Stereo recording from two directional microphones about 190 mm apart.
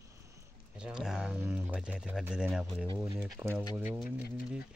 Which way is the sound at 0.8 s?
5° right (ahead or behind).